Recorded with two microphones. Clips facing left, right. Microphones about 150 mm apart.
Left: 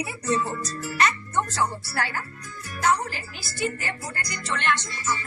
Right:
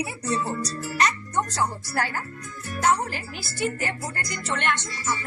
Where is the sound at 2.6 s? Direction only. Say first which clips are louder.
Right 1 dB; 55° right (ahead or behind).